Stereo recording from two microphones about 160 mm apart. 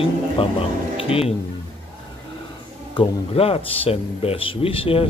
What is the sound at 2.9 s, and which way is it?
Speech, 35° left (ahead or behind).